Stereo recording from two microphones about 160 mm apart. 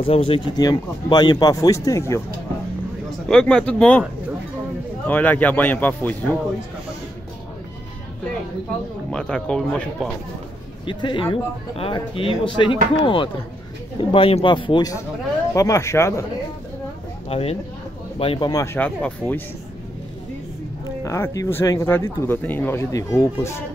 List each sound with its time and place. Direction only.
0.0 s speech: 35° left (ahead or behind)
0.6 s speech: 25° left (ahead or behind)
3.3 s speech: 5° left (ahead or behind)
5.0 s speech: 10° left (ahead or behind)
9.1 s speech: 5° left (ahead or behind)
10.9 s speech: 30° left (ahead or behind)
17.3 s speech: 35° left (ahead or behind)
18.5 s speech: 15° left (ahead or behind)
21.0 s speech: 20° left (ahead or behind)